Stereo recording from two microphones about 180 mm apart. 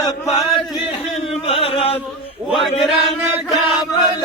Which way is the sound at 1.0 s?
35° left (ahead or behind).